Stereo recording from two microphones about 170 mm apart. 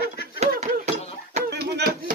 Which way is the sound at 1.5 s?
80° right.